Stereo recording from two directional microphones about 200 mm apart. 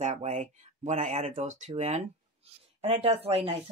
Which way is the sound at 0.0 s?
35° right (ahead or behind).